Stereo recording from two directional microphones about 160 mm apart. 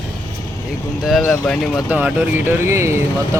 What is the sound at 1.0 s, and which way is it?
Speech, centre (ahead or behind).